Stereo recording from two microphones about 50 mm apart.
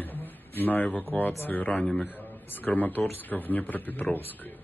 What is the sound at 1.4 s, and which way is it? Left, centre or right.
A man's voice, left.